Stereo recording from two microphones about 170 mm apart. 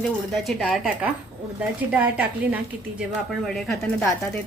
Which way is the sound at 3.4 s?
Centre (ahead or behind).